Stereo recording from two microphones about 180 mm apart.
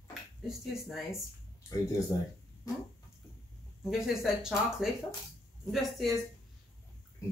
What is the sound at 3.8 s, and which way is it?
Speech, centre (ahead or behind).